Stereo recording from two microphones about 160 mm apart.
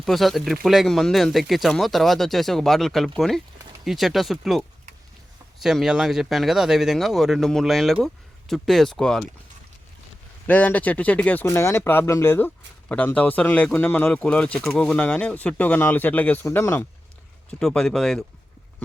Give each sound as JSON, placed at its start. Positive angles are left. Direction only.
{"t": 0.0, "sound": "speech", "side_deg": 0}
{"t": 10.4, "sound": "speech", "side_deg": 10}
{"t": 17.6, "sound": "speech", "side_deg": 5}